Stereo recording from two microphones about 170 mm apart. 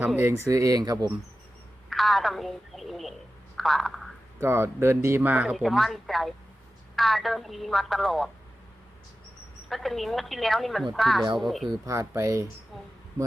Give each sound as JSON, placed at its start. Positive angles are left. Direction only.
{"t": 0.0, "sound": "speech", "side_deg": -10}
{"t": 1.9, "sound": "speech", "side_deg": 0}
{"t": 4.4, "sound": "speech", "side_deg": -15}
{"t": 9.6, "sound": "speech", "side_deg": 0}
{"t": 11.9, "sound": "speech", "side_deg": -20}